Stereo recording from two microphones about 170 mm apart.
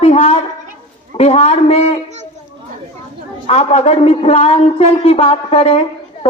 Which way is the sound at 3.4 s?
40° left (ahead or behind).